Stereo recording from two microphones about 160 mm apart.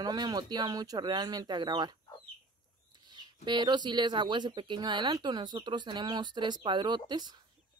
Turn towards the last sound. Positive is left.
turn(degrees=-30)  # may be behind; listen again after turning